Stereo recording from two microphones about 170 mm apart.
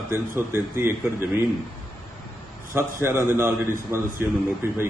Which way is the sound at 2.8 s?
15° right (ahead or behind).